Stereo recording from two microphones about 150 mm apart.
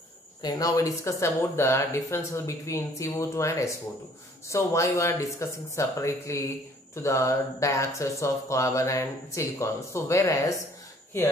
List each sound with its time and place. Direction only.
0.4 s speech: 25° left (ahead or behind)